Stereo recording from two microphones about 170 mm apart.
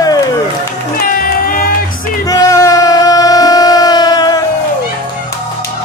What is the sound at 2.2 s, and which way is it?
Music, 20° left (ahead or behind).